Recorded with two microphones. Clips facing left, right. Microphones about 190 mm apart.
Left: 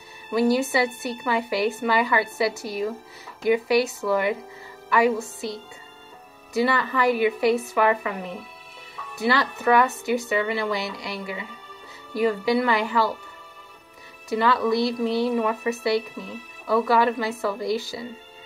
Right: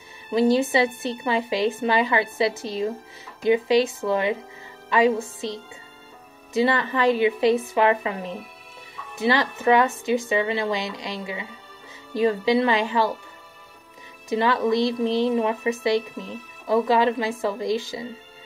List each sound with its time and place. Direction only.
0.3 s speech: 20° right (ahead or behind)
6.5 s speech: 20° right (ahead or behind)
14.3 s speech: 20° right (ahead or behind)